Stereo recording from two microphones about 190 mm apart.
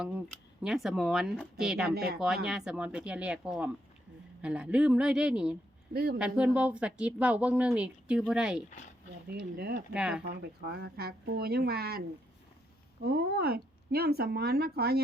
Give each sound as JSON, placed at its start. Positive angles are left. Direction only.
{"t": 0.0, "sound": "speech", "side_deg": -5}
{"t": 1.9, "sound": "a woman's voice", "side_deg": -55}
{"t": 2.1, "sound": "speech", "side_deg": -5}
{"t": 5.9, "sound": "a woman's voice", "side_deg": -55}
{"t": 6.1, "sound": "a woman's voice", "side_deg": -5}
{"t": 9.3, "sound": "a woman's voice", "side_deg": -55}
{"t": 9.9, "sound": "speech", "side_deg": -5}
{"t": 10.2, "sound": "a woman's voice", "side_deg": -55}